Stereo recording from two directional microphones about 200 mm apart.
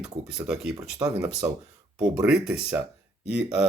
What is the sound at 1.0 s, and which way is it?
Speech, 15° right (ahead or behind).